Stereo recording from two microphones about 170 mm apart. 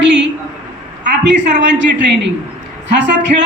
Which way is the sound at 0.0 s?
90° right.